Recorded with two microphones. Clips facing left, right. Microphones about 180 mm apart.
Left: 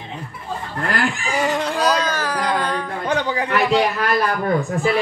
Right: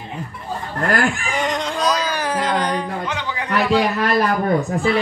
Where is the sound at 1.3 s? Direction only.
5° left (ahead or behind).